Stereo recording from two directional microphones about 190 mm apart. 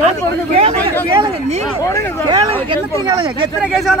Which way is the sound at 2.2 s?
30° right (ahead or behind).